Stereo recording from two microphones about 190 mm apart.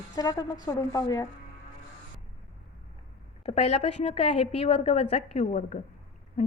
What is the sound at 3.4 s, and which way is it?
A woman's voice, 35° left (ahead or behind).